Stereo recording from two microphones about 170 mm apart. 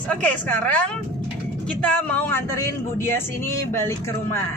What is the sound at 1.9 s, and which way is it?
Speech, 10° left (ahead or behind).